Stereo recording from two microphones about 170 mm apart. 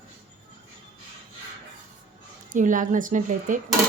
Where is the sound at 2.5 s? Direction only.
50° right (ahead or behind).